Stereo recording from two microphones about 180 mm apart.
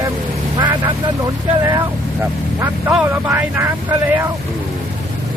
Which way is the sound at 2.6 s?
15° right (ahead or behind).